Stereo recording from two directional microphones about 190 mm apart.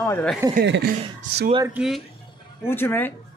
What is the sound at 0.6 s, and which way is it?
Speech, 65° right (ahead or behind).